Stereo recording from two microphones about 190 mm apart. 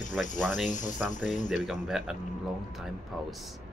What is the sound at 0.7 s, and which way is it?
Speech, 40° left (ahead or behind).